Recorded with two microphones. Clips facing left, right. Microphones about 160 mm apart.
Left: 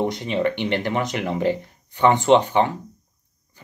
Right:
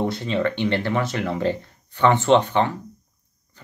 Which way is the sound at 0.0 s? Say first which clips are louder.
Left 1 dB; 15° left (ahead or behind).